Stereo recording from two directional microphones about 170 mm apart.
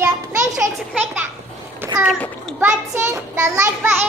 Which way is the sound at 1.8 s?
10° right (ahead or behind).